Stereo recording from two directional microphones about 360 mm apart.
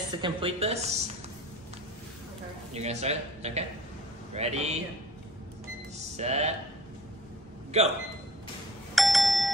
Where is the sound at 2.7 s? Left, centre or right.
Centre.